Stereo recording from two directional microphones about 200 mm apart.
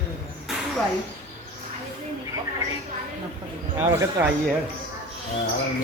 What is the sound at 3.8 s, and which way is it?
Basketball bounce, 10° right (ahead or behind).